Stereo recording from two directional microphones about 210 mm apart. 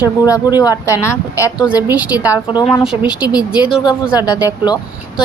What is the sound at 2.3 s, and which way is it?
Speech, 20° left (ahead or behind).